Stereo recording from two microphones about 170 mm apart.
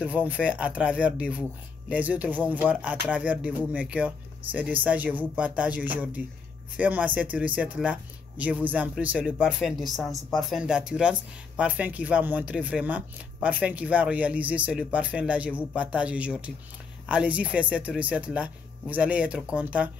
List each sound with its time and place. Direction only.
0.0 s speech: 10° right (ahead or behind)